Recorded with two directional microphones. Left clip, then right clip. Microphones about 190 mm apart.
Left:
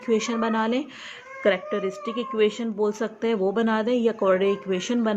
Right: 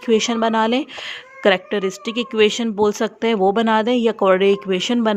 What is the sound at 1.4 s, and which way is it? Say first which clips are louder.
Speech: right 6 dB; 55° right (ahead or behind).